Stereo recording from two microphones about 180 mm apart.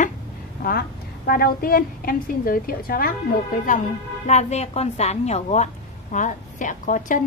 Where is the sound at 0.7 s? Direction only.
55° left (ahead or behind).